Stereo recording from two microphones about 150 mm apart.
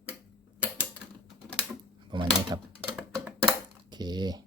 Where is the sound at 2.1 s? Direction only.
30° right (ahead or behind).